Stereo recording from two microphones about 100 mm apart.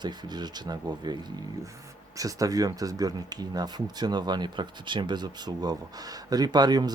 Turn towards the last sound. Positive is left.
turn(degrees=-45)  # may be behind; listen again after turning